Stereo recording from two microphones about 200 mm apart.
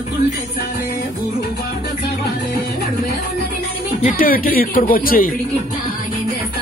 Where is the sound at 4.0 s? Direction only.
40° left (ahead or behind).